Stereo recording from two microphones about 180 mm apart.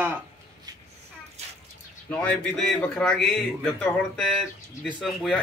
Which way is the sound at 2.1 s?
10° left (ahead or behind).